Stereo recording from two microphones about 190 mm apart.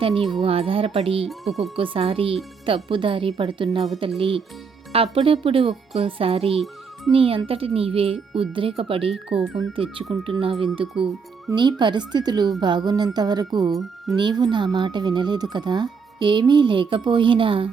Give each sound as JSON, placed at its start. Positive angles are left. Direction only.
{"t": 0.0, "sound": "speech", "side_deg": -30}
{"t": 1.3, "sound": "speech", "side_deg": 0}
{"t": 1.7, "sound": "speech", "side_deg": -30}
{"t": 9.3, "sound": "speech", "side_deg": 0}
{"t": 9.7, "sound": "speech", "side_deg": -30}